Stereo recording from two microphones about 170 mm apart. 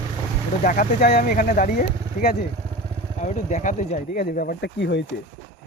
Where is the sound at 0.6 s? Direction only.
55° left (ahead or behind).